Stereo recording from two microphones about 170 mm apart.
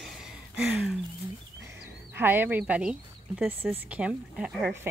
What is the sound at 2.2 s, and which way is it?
A woman's voice, 10° right (ahead or behind).